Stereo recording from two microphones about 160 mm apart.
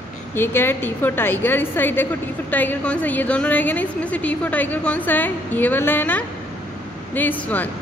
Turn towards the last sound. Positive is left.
turn(degrees=10)  # may be behind; listen again after turning